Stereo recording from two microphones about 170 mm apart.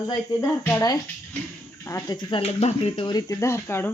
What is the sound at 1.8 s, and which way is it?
Speech, 20° left (ahead or behind).